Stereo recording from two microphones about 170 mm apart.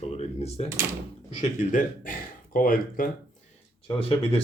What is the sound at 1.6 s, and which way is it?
Speech, 50° left (ahead or behind).